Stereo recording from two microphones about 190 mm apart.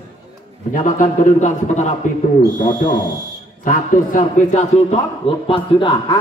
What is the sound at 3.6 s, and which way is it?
A man's voice, 45° left (ahead or behind).